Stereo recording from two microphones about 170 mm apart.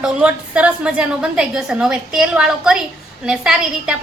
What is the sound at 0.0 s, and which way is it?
A woman's voice, 5° right (ahead or behind).